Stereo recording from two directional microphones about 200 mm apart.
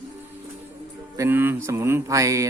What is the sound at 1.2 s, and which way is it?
Speech, 10° right (ahead or behind).